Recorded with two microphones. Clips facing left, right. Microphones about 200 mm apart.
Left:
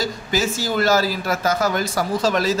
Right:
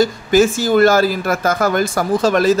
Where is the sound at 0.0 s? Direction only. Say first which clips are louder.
Right 10 dB; 50° right (ahead or behind).